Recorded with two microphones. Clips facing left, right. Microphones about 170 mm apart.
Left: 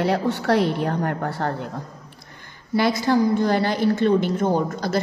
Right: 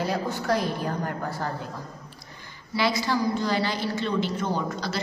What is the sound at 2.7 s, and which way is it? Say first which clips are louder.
A woman's voice: left 6 dB; 50° left (ahead or behind).